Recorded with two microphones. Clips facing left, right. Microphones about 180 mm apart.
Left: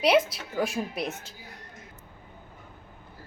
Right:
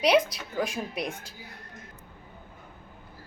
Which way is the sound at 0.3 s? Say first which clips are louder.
Left 2 dB; 5° left (ahead or behind).